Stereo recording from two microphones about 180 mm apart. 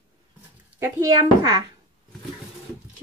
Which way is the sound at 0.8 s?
20° right (ahead or behind).